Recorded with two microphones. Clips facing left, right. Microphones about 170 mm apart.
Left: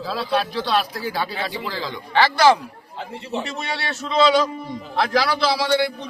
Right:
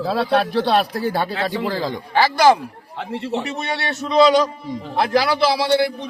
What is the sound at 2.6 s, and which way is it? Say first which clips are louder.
Speech: right 3 dB; 65° right (ahead or behind).